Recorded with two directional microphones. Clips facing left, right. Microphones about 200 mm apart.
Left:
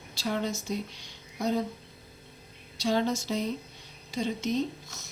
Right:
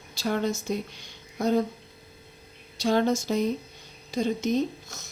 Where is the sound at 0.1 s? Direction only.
50° right (ahead or behind).